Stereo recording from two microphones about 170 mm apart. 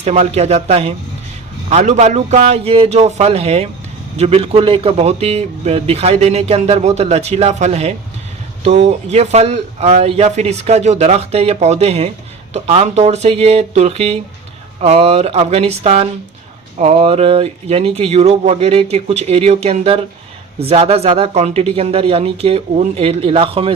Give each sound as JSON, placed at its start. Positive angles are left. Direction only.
{"t": 0.0, "sound": "a man's voice", "side_deg": -40}